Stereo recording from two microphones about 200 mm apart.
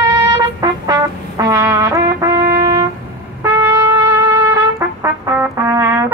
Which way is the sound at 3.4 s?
15° right (ahead or behind).